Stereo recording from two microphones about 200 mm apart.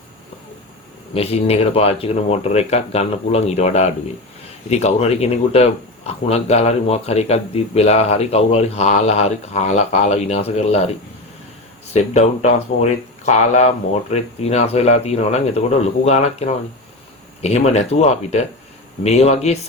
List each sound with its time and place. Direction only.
1.1 s speech: 30° left (ahead or behind)
11.9 s speech: 35° left (ahead or behind)